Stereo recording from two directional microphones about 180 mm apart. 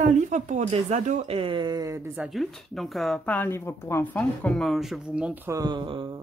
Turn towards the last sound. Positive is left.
turn(degrees=-25)  # may be behind; listen again after turning